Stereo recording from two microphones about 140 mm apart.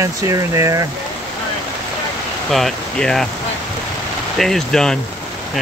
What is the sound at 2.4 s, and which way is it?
Speech, centre (ahead or behind).